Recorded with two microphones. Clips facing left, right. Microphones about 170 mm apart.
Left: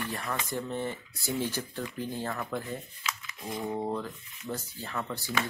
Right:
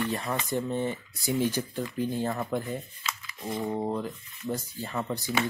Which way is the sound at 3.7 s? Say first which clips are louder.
Right 1 dB; 15° right (ahead or behind).